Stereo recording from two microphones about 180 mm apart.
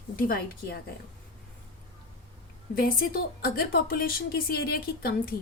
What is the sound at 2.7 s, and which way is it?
A woman's voice, 55° left (ahead or behind).